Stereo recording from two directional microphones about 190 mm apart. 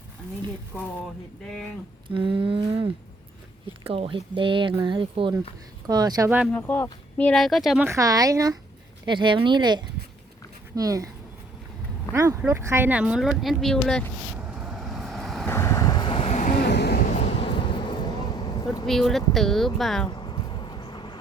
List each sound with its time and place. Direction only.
2.0 s speech: 25° right (ahead or behind); by 6.5 s 10° right (ahead or behind)
6.5 s speech: 10° left (ahead or behind)
7.9 s speech: 15° right (ahead or behind)
12.1 s speech: 15° right (ahead or behind); by 14.1 s 5° left (ahead or behind)
14.5 s vehicle: 5° right (ahead or behind)
15.4 s vehicle: 15° left (ahead or behind); by 16.6 s 40° left (ahead or behind)
16.6 s a sound: 60° left (ahead or behind)
17.1 s vehicle: 30° left (ahead or behind)
18.9 s speech: centre (ahead or behind)
20.1 s bee: 25° left (ahead or behind)